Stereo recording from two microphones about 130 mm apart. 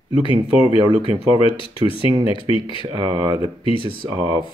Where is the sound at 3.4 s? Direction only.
40° left (ahead or behind).